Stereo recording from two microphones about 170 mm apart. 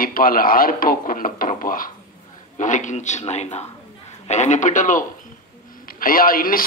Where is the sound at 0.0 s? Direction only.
55° left (ahead or behind).